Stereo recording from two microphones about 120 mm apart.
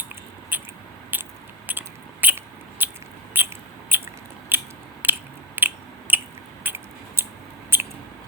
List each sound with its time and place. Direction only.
0.5 s mouse: 15° right (ahead or behind)
1.1 s biting: 15° right (ahead or behind)
1.7 s a sound: 15° right (ahead or behind)
3.3 s biting: 15° right (ahead or behind)
5.5 s chewing: 15° right (ahead or behind)
7.7 s mouse: 15° right (ahead or behind)